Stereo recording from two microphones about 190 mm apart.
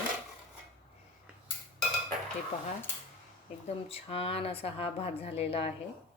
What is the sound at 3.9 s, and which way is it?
A woman's voice, 30° left (ahead or behind).